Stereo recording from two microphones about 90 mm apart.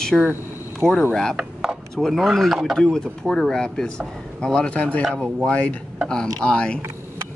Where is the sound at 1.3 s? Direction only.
10° right (ahead or behind).